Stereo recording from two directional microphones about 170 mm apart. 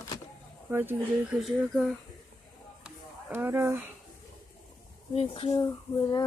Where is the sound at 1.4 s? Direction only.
Centre (ahead or behind).